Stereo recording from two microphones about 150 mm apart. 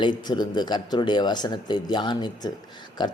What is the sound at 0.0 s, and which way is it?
A man's voice, 30° left (ahead or behind).